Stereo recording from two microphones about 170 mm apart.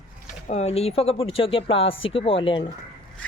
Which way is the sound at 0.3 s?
45° left (ahead or behind).